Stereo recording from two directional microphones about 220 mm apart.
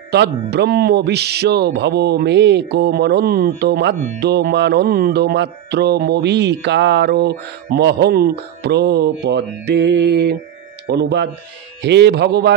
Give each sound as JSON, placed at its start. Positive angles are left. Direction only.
{"t": 0.1, "sound": "speech", "side_deg": -50}